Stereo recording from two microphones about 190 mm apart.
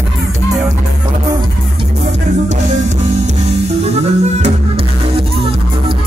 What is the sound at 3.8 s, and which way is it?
Music, 35° right (ahead or behind).